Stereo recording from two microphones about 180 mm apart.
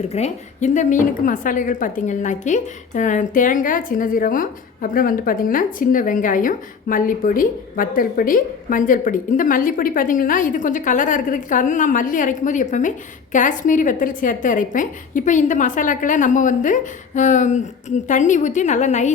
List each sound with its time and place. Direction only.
0.1 s a woman's voice: 40° left (ahead or behind)